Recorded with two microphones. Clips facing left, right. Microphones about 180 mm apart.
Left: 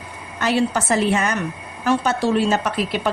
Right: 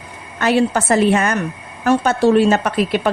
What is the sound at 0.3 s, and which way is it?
A woman's voice, 60° right (ahead or behind).